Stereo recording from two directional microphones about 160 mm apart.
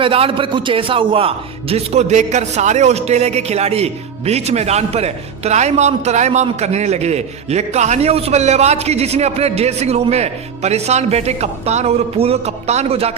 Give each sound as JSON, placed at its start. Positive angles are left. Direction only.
{"t": 0.0, "sound": "a man's voice", "side_deg": -35}